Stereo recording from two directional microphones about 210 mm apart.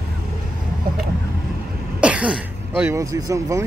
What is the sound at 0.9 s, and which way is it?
Vehicle, 45° right (ahead or behind).